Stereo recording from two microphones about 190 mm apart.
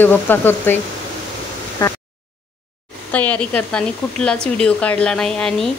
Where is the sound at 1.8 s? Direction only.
20° left (ahead or behind).